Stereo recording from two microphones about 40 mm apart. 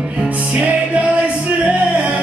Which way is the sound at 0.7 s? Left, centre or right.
Right.